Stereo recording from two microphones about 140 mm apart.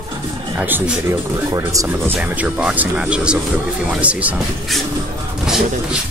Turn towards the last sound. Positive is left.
turn(degrees=-5)  # may be behind; listen again after turning